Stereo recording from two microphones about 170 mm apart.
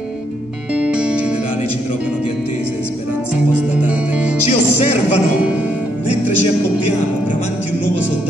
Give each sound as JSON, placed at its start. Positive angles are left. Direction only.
{"t": 0.7, "sound": "music", "side_deg": -5}
{"t": 4.5, "sound": "music", "side_deg": 40}